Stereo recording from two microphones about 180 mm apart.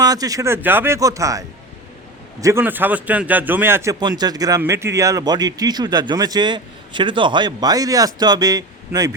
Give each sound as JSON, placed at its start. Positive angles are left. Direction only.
{"t": 0.0, "sound": "a man's voice", "side_deg": -20}